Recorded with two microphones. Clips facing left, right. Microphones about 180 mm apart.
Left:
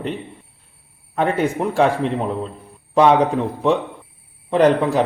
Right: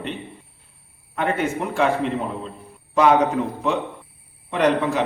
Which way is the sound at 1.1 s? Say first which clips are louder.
Left 4 dB; 35° left (ahead or behind).